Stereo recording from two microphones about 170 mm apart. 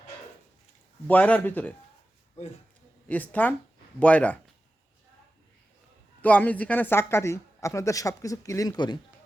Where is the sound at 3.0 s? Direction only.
10° left (ahead or behind).